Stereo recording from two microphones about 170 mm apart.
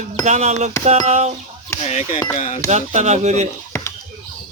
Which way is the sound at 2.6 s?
45° right (ahead or behind).